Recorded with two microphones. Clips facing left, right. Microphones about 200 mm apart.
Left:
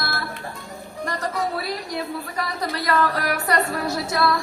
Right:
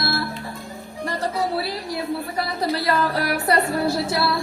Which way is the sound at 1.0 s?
30° right (ahead or behind).